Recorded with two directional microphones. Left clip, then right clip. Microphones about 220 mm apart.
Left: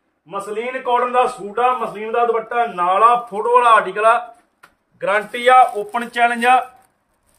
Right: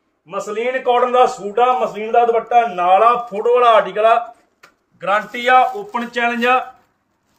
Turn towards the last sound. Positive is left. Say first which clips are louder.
# left 2 dB
turn(degrees=50)  # may be behind; listen again after turning